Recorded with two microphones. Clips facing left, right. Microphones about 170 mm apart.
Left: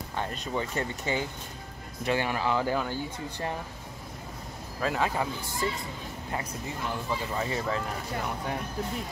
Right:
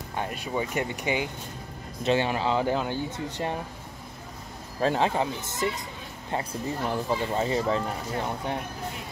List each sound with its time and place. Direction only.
0.1 s speech: 10° right (ahead or behind)
4.7 s speech: 30° right (ahead or behind)